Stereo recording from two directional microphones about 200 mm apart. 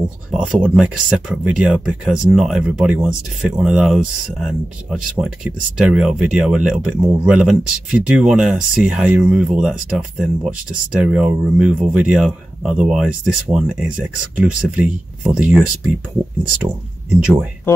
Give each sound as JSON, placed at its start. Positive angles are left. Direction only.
{"t": 0.3, "sound": "speech", "side_deg": 0}
{"t": 17.2, "sound": "speech", "side_deg": -5}